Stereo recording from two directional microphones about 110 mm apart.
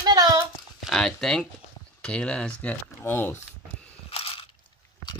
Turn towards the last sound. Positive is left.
turn(degrees=60)  # may be behind; listen again after turning